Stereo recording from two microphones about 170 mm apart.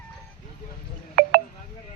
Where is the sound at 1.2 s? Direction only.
65° right (ahead or behind).